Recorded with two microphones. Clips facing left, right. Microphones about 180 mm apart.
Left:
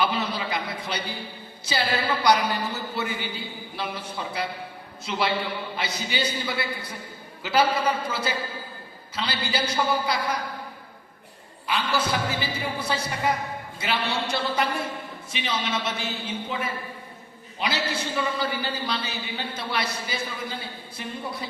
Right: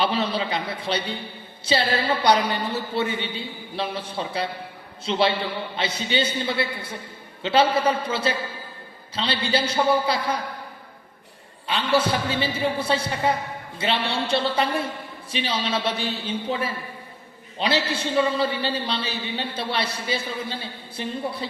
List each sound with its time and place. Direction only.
0.0 s a man's voice: 30° right (ahead or behind)
11.7 s a man's voice: 30° right (ahead or behind)